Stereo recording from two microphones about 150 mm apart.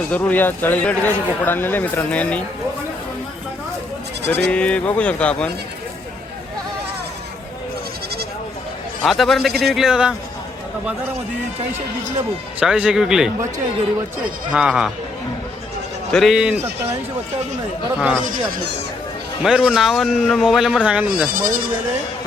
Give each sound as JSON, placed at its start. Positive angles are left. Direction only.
{"t": 0.1, "sound": "speech", "side_deg": 10}
{"t": 4.4, "sound": "speech", "side_deg": 5}
{"t": 9.0, "sound": "a man's voice", "side_deg": 0}
{"t": 12.5, "sound": "a man's voice", "side_deg": -5}
{"t": 14.5, "sound": "a man's voice", "side_deg": -5}
{"t": 16.1, "sound": "a man's voice", "side_deg": 0}
{"t": 19.4, "sound": "a man's voice", "side_deg": -5}
{"t": 21.2, "sound": "speech", "side_deg": -70}